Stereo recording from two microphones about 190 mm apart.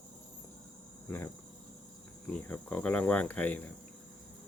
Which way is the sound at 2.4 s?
10° left (ahead or behind).